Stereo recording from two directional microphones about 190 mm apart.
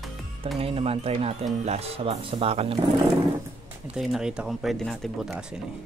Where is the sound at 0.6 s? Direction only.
30° right (ahead or behind).